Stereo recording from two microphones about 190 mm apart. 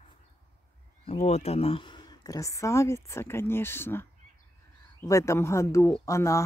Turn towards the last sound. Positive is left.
turn(degrees=15)  # may be behind; listen again after turning